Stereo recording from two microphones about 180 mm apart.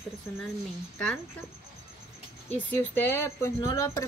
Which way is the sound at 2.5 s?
10° left (ahead or behind).